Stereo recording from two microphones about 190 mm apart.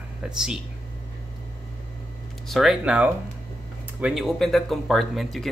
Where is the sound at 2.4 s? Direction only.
Centre (ahead or behind).